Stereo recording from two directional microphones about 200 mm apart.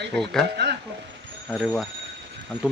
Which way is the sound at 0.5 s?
55° right (ahead or behind).